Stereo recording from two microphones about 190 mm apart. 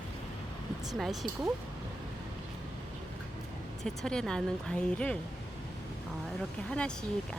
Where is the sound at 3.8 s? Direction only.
Centre (ahead or behind).